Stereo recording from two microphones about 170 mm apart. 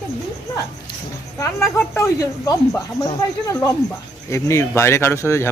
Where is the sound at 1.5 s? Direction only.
15° left (ahead or behind).